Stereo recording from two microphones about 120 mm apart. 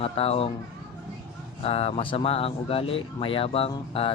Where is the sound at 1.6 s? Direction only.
55° left (ahead or behind).